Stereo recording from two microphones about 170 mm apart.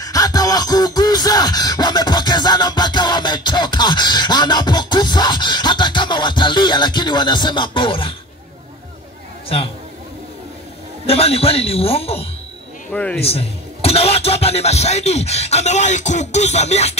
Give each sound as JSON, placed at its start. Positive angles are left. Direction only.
{"t": 0.0, "sound": "a sound", "side_deg": 20}
{"t": 11.1, "sound": "speech", "side_deg": 35}
{"t": 12.9, "sound": "speech", "side_deg": 5}
{"t": 13.2, "sound": "speech", "side_deg": 35}